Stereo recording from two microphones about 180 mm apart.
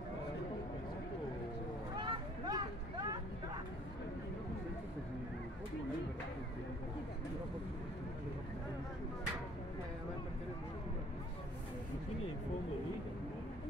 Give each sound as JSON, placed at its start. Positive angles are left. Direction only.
{"t": 2.0, "sound": "vehicle", "side_deg": -25}